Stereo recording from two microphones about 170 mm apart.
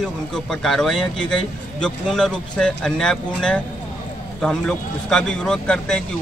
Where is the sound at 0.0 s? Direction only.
Centre (ahead or behind).